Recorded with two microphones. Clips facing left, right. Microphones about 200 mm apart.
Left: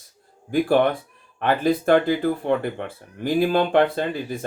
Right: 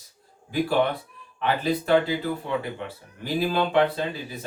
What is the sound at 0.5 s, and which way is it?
Speech, 50° left (ahead or behind).